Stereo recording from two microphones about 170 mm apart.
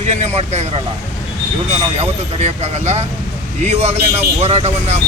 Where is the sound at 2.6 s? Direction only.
40° right (ahead or behind).